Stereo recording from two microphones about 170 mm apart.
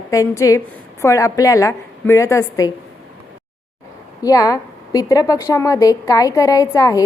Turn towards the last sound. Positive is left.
turn(degrees=20)  # may be behind; listen again after turning